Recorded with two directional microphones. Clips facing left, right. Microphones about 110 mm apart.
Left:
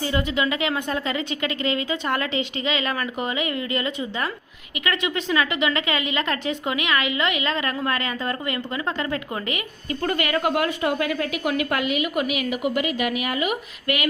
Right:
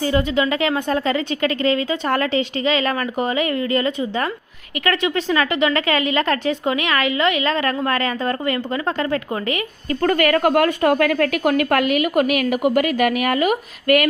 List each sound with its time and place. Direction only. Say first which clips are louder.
0.0 s speech: right 5 dB; 35° right (ahead or behind)
9.9 s a woman's voice: right 7 dB; 50° right (ahead or behind)